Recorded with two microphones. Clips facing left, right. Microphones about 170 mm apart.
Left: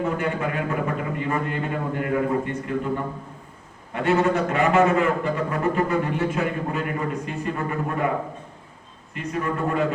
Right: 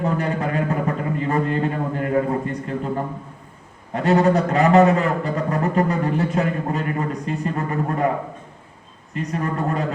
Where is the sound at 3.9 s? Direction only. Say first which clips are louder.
Right 4 dB; 40° right (ahead or behind).